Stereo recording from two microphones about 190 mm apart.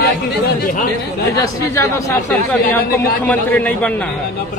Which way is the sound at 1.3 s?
15° left (ahead or behind).